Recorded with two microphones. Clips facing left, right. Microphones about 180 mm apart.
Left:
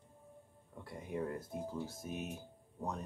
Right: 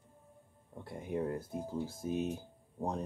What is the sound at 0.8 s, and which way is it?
Speech, 25° right (ahead or behind).